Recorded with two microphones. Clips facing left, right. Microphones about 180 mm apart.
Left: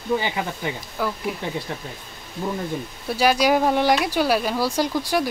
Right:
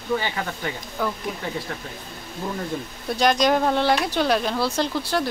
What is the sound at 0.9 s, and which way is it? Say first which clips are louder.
Speech: left 1 dB; 5° left (ahead or behind).